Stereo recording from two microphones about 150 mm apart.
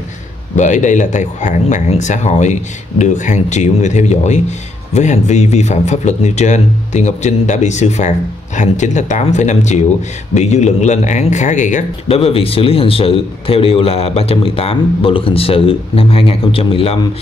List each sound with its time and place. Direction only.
0.6 s speech: 55° left (ahead or behind)
12.1 s a man's voice: 40° left (ahead or behind)